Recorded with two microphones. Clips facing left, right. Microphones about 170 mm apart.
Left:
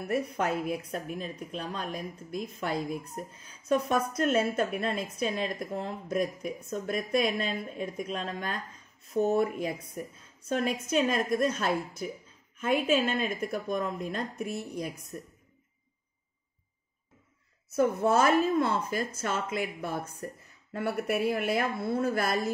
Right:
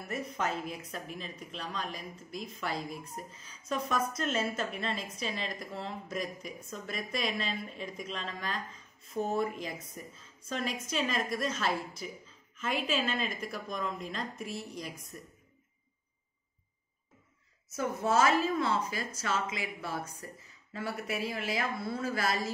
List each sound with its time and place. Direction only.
0.0 s a woman's voice: 60° left (ahead or behind)
17.6 s a woman's voice: 60° left (ahead or behind)